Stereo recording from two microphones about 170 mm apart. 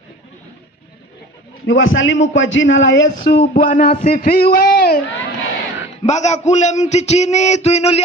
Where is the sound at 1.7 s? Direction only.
90° left; by 5.0 s 65° left (ahead or behind).